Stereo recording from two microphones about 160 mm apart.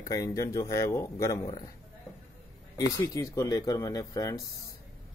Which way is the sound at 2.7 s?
20° left (ahead or behind).